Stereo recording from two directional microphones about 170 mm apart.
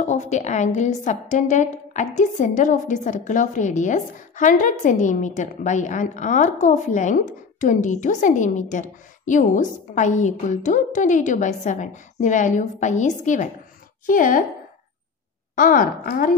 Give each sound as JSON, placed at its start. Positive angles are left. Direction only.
{"t": 0.0, "sound": "a woman's voice", "side_deg": 45}
{"t": 15.5, "sound": "a woman's voice", "side_deg": 55}